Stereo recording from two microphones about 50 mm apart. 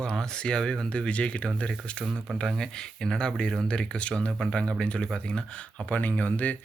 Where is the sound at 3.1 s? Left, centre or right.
Centre.